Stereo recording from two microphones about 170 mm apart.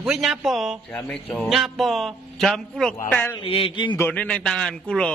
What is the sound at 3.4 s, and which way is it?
Speech, 35° left (ahead or behind).